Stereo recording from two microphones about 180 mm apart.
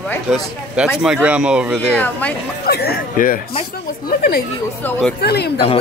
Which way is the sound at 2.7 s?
60° left (ahead or behind).